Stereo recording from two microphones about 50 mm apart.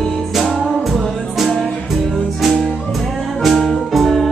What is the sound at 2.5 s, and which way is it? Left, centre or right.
Music, centre.